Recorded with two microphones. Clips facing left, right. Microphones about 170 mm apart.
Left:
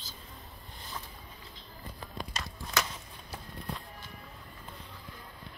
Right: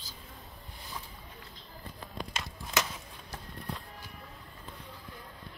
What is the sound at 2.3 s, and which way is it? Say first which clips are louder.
Walk: right 1 dB; 20° right (ahead or behind).